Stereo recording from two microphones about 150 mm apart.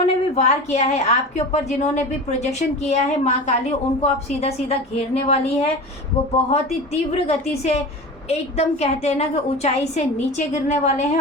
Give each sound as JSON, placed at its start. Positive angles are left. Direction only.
{"t": 0.3, "sound": "a woman's voice", "side_deg": 45}